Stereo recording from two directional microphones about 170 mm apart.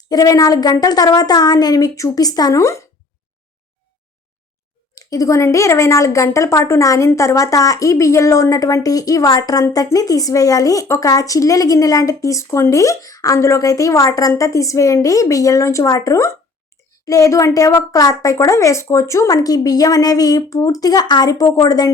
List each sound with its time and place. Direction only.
0.1 s speech: 20° left (ahead or behind)
4.9 s speech: 20° left (ahead or behind)